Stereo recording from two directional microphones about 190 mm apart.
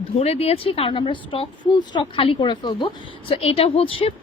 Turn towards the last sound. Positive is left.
turn(degrees=30)  # may be behind; listen again after turning